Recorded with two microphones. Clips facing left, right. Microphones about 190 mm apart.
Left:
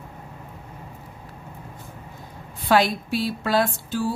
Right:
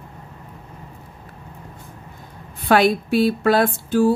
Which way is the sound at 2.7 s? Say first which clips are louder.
Right 4 dB; 55° right (ahead or behind).